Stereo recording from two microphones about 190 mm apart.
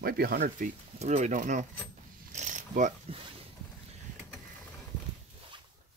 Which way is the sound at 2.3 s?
40° right (ahead or behind).